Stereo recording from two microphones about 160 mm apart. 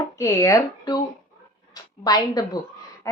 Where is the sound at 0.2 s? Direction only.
20° left (ahead or behind).